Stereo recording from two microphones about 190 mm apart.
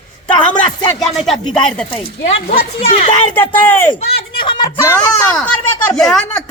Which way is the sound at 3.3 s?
10° left (ahead or behind).